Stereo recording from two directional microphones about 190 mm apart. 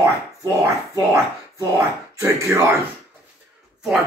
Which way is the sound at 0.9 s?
15° right (ahead or behind).